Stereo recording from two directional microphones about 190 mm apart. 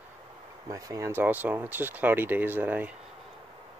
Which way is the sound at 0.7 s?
15° right (ahead or behind).